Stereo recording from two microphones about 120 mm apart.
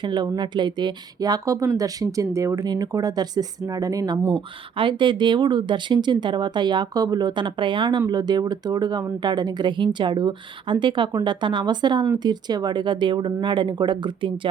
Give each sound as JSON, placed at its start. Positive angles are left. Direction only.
{"t": 0.0, "sound": "speech", "side_deg": -40}
{"t": 4.4, "sound": "speech", "side_deg": -45}